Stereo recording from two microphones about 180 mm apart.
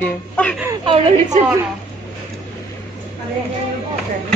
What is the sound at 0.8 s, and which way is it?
Speech, 30° right (ahead or behind).